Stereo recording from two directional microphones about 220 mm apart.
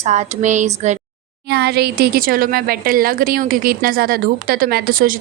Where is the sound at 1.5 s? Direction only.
50° right (ahead or behind).